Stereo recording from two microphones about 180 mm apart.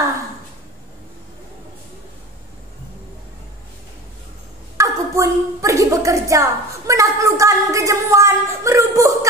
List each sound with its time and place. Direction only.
4.7 s a woman's voice: 15° right (ahead or behind)